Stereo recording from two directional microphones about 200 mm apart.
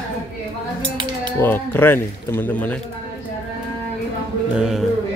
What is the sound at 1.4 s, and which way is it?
Speech, 10° left (ahead or behind).